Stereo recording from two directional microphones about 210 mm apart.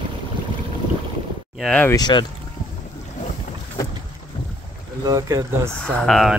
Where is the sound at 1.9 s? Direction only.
20° left (ahead or behind).